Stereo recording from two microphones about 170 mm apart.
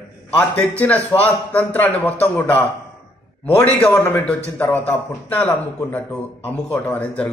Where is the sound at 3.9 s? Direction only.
10° left (ahead or behind).